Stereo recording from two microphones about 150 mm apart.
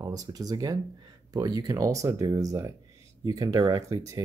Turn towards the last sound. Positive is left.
turn(degrees=-25)  # may be behind; listen again after turning